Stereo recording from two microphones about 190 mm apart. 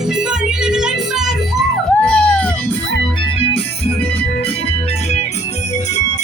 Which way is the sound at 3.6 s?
30° left (ahead or behind).